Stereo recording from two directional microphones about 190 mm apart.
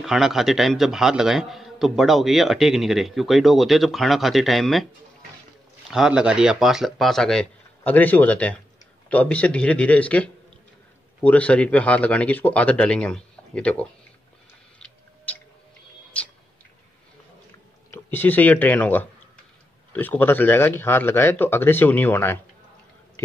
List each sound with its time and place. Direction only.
0.0 s speech: centre (ahead or behind)
5.9 s speech: 5° right (ahead or behind)
14.8 s a sound: 5° left (ahead or behind)
17.9 s speech: 10° left (ahead or behind)